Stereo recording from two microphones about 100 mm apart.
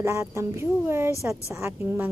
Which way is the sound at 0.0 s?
30° right (ahead or behind).